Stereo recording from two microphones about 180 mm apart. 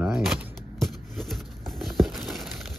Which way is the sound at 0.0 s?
5° right (ahead or behind).